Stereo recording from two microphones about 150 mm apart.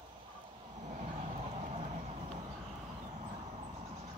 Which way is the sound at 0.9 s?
50° right (ahead or behind).